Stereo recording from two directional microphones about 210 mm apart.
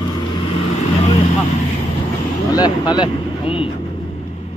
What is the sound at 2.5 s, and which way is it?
Speech, 20° left (ahead or behind).